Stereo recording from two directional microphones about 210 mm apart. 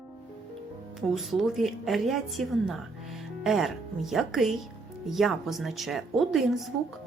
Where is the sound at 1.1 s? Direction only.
Centre (ahead or behind).